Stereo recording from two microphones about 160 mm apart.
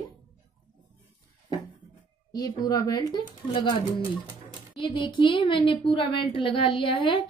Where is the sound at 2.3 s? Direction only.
25° left (ahead or behind).